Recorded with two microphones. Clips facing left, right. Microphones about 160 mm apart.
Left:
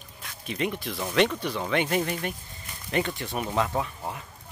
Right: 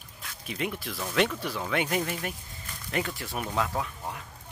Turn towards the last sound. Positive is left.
turn(degrees=0)  # may be behind; listen again after turning